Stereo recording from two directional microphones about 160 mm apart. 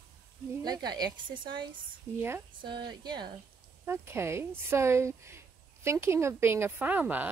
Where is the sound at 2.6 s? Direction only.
30° right (ahead or behind).